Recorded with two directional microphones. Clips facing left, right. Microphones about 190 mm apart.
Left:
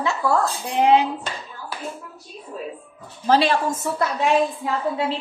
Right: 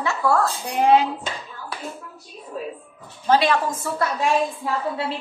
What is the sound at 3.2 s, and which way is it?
Speech, 35° left (ahead or behind).